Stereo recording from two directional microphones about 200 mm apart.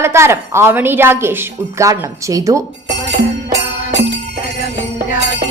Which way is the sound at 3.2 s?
55° right (ahead or behind).